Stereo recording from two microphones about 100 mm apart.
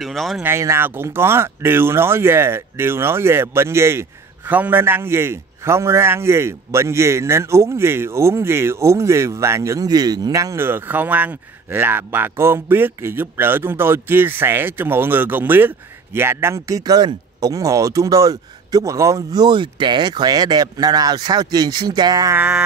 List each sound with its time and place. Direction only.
0.0 s speech: centre (ahead or behind)
0.4 s speech: 25° right (ahead or behind); by 22.3 s 40° right (ahead or behind)
22.3 s music: 15° right (ahead or behind)